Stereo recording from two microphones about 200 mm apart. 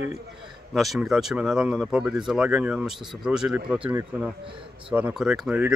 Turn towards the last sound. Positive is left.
turn(degrees=-5)  # may be behind; listen again after turning